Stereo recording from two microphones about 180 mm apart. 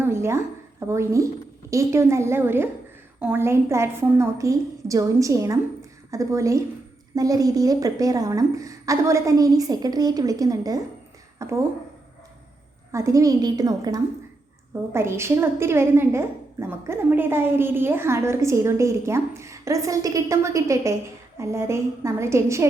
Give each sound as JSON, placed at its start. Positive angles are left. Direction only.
{"t": 0.0, "sound": "a woman's voice", "side_deg": -15}
{"t": 11.3, "sound": "a sound", "side_deg": -15}
{"t": 12.9, "sound": "a woman's voice", "side_deg": -15}